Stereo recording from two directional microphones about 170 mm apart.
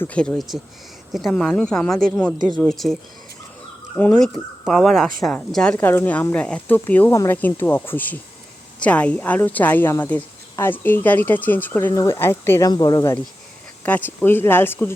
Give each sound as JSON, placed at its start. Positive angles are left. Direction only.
{"t": 0.0, "sound": "a woman's voice", "side_deg": 5}
{"t": 13.8, "sound": "a woman's voice", "side_deg": 10}